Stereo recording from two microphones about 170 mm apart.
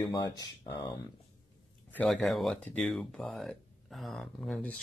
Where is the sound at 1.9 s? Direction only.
Centre (ahead or behind).